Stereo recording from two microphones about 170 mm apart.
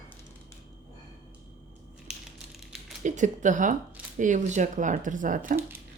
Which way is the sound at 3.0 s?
45° right (ahead or behind).